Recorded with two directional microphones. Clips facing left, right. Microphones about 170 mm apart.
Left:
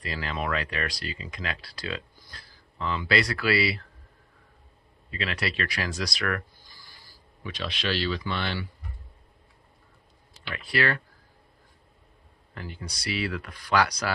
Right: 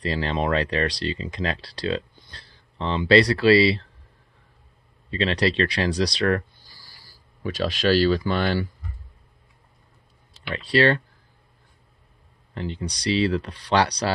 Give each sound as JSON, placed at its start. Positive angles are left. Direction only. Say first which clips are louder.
{"t": 0.0, "sound": "speech", "louder": "right 7 dB", "side_deg": -30}
{"t": 5.1, "sound": "speech", "louder": "right 9 dB", "side_deg": -30}
{"t": 7.4, "sound": "speech", "louder": "right 9 dB", "side_deg": -45}
{"t": 10.5, "sound": "speech", "louder": "right 8 dB", "side_deg": -30}
{"t": 12.5, "sound": "speech", "louder": "right 9 dB", "side_deg": -25}